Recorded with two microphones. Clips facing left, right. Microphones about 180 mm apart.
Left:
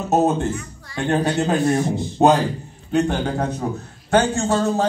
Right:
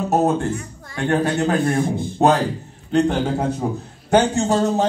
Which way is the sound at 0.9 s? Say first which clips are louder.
Even; 20° left (ahead or behind).